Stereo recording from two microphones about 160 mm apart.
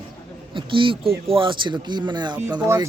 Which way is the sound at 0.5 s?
30° right (ahead or behind).